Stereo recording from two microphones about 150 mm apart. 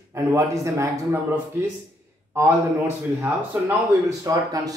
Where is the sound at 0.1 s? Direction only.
20° right (ahead or behind).